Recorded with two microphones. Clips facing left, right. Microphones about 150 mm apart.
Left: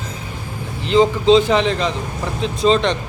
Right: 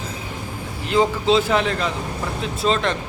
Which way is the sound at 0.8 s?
10° right (ahead or behind).